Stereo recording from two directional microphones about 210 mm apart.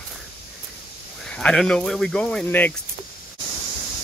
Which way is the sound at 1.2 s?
5° left (ahead or behind).